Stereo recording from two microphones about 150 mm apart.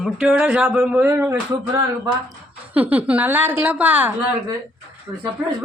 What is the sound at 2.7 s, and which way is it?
A woman's voice, 10° right (ahead or behind).